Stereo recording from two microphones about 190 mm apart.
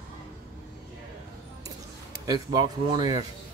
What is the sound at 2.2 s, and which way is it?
Speech, 20° right (ahead or behind).